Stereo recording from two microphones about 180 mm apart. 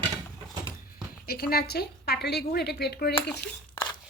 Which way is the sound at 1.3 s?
55° left (ahead or behind).